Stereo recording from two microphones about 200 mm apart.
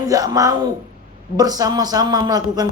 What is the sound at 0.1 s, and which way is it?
A man's voice, 15° right (ahead or behind).